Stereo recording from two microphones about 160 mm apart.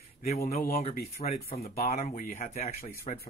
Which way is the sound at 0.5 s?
65° left (ahead or behind).